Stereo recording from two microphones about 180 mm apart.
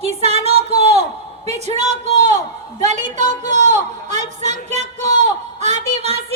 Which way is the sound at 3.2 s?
40° right (ahead or behind).